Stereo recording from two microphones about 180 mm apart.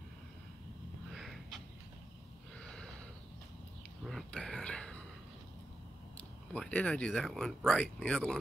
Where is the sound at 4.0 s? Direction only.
Centre (ahead or behind).